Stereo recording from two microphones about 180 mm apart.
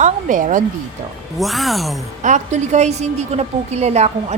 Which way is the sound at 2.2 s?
40° right (ahead or behind).